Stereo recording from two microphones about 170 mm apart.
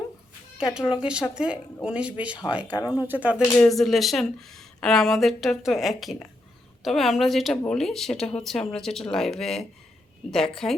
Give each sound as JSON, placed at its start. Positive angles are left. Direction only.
{"t": 0.6, "sound": "speech", "side_deg": -5}
{"t": 2.6, "sound": "speech", "side_deg": 20}
{"t": 3.1, "sound": "speech", "side_deg": -10}
{"t": 3.6, "sound": "speech", "side_deg": 0}